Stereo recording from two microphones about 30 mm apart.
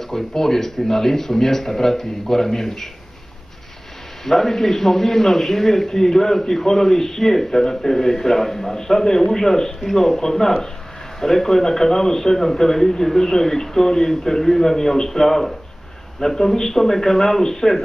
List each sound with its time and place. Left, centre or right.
0.1 s speech: centre
4.2 s speech: centre